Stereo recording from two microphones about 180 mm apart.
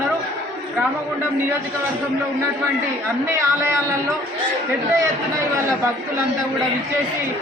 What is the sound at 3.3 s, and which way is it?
Speech, 15° right (ahead or behind).